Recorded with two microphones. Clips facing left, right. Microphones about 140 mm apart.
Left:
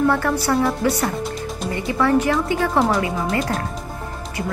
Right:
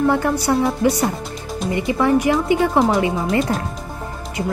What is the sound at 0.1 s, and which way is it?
A woman's voice, 15° right (ahead or behind).